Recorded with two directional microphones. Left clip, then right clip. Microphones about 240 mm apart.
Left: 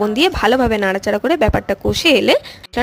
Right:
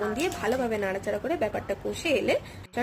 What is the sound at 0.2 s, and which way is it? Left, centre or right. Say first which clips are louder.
Speech: left 17 dB; left.